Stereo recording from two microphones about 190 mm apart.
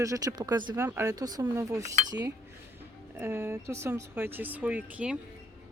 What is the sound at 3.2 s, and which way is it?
Speech, 15° right (ahead or behind).